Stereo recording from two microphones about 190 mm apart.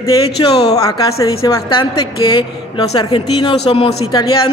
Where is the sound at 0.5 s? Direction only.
30° left (ahead or behind).